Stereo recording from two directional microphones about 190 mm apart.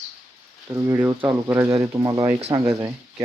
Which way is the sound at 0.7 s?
10° right (ahead or behind).